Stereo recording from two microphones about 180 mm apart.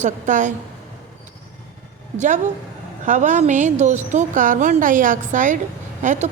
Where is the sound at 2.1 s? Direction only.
40° right (ahead or behind).